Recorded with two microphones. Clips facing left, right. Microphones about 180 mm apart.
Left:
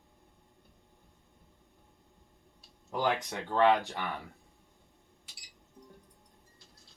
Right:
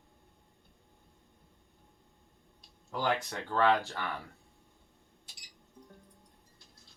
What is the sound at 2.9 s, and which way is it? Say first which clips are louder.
Speech: left 1 dB; 20° left (ahead or behind).